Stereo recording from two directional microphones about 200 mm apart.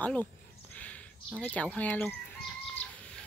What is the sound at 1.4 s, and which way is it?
Speech, 5° left (ahead or behind).